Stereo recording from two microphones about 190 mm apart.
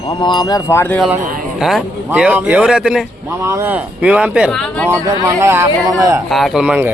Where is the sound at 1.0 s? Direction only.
5° right (ahead or behind).